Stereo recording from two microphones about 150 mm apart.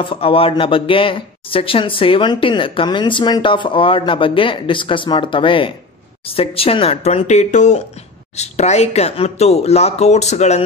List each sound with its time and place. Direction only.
0.0 s speech: 35° left (ahead or behind)